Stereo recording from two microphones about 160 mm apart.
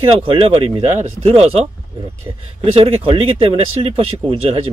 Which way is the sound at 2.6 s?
35° right (ahead or behind).